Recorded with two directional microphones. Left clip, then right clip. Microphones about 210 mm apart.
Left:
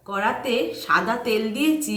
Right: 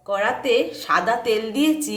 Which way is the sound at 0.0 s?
45° right (ahead or behind).